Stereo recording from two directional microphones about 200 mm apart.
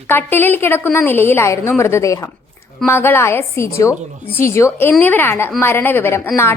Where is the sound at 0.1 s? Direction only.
10° left (ahead or behind).